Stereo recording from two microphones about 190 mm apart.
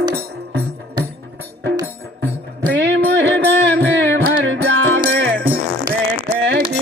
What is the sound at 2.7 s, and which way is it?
Music, 70° right (ahead or behind).